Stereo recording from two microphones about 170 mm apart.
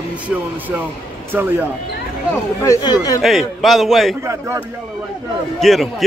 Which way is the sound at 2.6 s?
20° left (ahead or behind).